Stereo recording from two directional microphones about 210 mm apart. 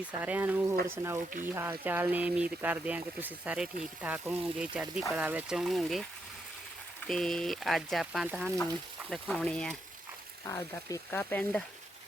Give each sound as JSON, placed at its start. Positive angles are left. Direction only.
{"t": 0.2, "sound": "speech", "side_deg": -10}
{"t": 7.1, "sound": "speech", "side_deg": 0}